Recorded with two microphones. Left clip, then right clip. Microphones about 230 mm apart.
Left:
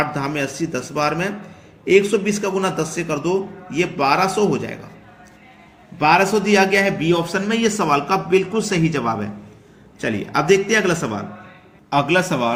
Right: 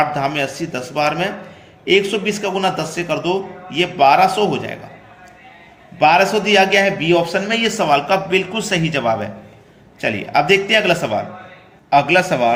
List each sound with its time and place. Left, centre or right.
0.0 s a man's voice: left
6.0 s a man's voice: left